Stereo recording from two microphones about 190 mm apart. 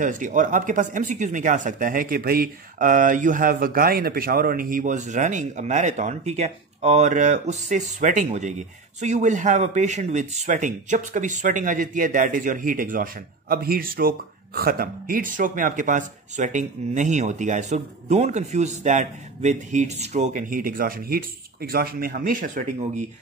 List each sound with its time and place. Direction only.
0.0 s speech: 40° right (ahead or behind)